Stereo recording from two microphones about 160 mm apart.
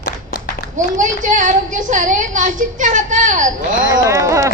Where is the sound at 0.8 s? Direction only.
55° right (ahead or behind).